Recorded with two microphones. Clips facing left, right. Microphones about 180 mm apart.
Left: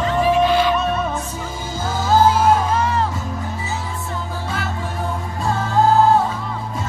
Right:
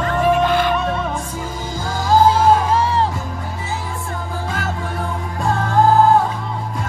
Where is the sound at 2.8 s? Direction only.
30° right (ahead or behind).